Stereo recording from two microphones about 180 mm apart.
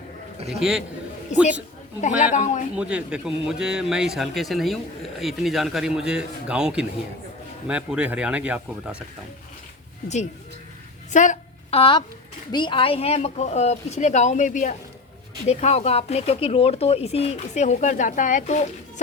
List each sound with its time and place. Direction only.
0.6 s speech: 5° right (ahead or behind)
2.3 s speech: 40° left (ahead or behind)
2.7 s speech: 5° right (ahead or behind)
11.1 s a sound: 45° left (ahead or behind)
11.8 s speech: 25° left (ahead or behind); by 18.6 s 40° left (ahead or behind)